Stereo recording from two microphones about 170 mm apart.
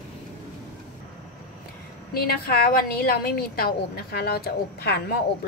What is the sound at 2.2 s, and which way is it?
A woman's voice, 60° left (ahead or behind).